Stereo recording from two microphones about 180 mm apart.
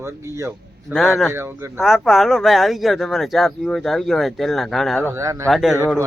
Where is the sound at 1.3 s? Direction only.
15° right (ahead or behind).